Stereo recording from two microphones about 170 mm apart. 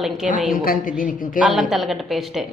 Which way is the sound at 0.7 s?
50° left (ahead or behind).